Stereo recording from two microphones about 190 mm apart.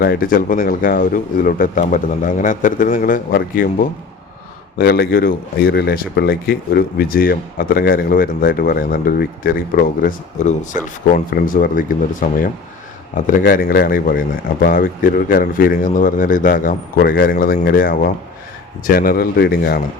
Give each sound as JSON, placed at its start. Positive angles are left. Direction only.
{"t": 0.0, "sound": "speech", "side_deg": 50}
{"t": 4.8, "sound": "speech", "side_deg": 55}